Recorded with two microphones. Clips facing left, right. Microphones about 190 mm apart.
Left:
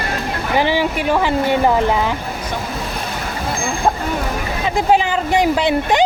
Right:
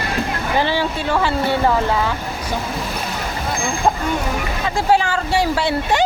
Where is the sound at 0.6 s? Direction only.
15° left (ahead or behind).